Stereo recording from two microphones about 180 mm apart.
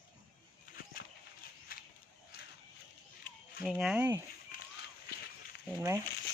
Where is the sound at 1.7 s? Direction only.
55° left (ahead or behind).